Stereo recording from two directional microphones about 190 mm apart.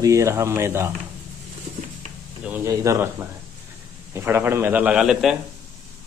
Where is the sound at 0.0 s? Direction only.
15° right (ahead or behind).